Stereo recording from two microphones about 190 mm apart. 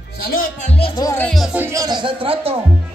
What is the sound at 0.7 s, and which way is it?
Music, 25° left (ahead or behind).